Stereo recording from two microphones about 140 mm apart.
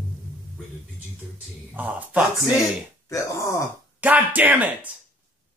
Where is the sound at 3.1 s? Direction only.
20° left (ahead or behind).